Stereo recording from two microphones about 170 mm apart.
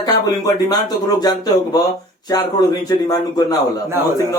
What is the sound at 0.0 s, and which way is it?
Speech, 20° left (ahead or behind).